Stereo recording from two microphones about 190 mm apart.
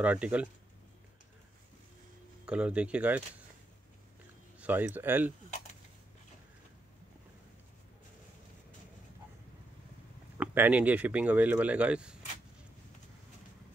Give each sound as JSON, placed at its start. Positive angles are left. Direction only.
{"t": 0.0, "sound": "speech", "side_deg": -5}
{"t": 2.4, "sound": "speech", "side_deg": -5}
{"t": 4.6, "sound": "speech", "side_deg": -10}
{"t": 10.3, "sound": "speech", "side_deg": -10}